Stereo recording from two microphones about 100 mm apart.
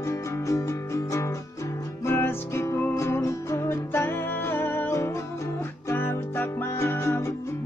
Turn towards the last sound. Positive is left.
turn(degrees=25)  # may be behind; listen again after turning